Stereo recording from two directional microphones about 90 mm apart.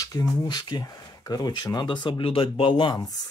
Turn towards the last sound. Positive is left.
turn(degrees=60)  # may be behind; listen again after turning